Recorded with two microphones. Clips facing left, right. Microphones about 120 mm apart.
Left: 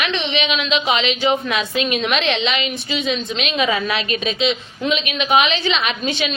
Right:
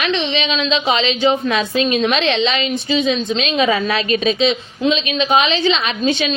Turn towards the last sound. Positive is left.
turn(degrees=-30)  # may be behind; listen again after turning